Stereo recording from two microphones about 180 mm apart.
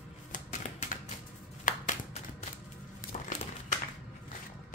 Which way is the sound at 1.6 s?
45° left (ahead or behind).